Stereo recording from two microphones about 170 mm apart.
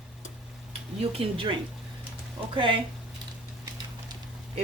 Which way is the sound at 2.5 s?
30° right (ahead or behind).